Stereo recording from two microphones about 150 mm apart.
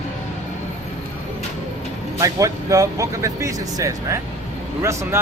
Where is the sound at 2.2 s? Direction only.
20° right (ahead or behind).